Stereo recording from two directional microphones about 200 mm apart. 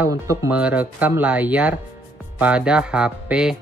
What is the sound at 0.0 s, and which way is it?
Speech, 15° right (ahead or behind).